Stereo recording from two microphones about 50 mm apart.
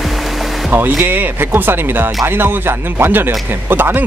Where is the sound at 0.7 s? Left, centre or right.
Right.